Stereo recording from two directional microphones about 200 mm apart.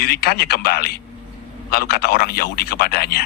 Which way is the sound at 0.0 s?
50° left (ahead or behind).